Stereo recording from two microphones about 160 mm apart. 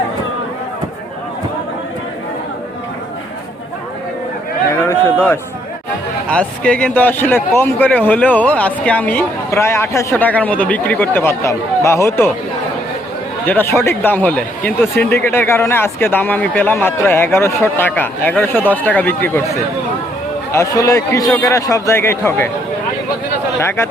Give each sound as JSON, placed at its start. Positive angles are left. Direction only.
{"t": 4.7, "sound": "a sound", "side_deg": 15}
{"t": 6.2, "sound": "speech", "side_deg": 5}
{"t": 13.4, "sound": "a man's voice", "side_deg": 10}
{"t": 23.6, "sound": "speech", "side_deg": 15}